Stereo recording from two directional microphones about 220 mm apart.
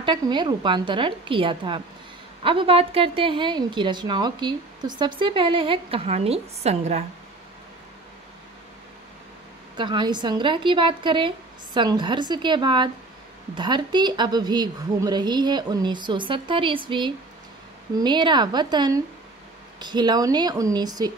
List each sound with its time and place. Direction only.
0.0 s a woman's voice: 20° right (ahead or behind)
9.8 s a woman's voice: 20° right (ahead or behind)
17.9 s a woman's voice: 20° right (ahead or behind)